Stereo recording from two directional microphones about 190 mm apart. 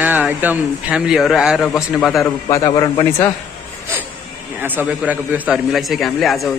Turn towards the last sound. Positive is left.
turn(degrees=0)  # may be behind; listen again after turning